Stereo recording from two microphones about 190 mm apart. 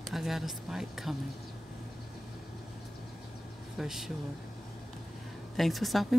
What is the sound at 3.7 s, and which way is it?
Speech, centre (ahead or behind).